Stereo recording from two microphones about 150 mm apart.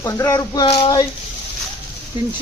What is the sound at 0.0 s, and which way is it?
Speech, 20° left (ahead or behind).